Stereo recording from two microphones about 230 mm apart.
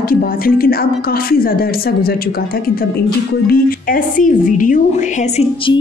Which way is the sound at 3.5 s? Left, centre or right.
Left.